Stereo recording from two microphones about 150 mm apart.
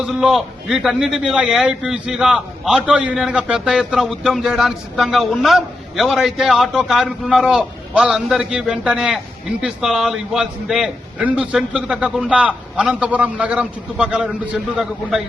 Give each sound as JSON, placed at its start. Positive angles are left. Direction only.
{"t": 0.0, "sound": "a man's voice", "side_deg": -5}